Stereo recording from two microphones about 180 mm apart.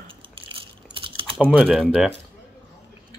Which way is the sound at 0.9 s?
30° right (ahead or behind).